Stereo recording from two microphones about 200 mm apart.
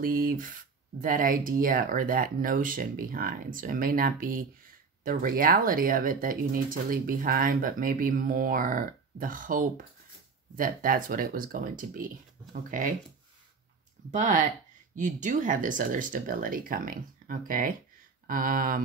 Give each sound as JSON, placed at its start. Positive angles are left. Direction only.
{"t": 0.0, "sound": "speech", "side_deg": -45}
{"t": 14.1, "sound": "speech", "side_deg": -40}